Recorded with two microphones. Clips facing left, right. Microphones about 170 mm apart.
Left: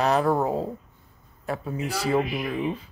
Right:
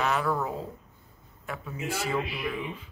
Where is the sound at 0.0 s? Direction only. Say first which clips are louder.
Left 6 dB; 35° left (ahead or behind).